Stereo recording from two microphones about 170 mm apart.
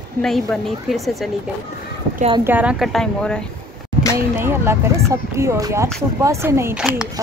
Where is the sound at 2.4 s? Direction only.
10° right (ahead or behind).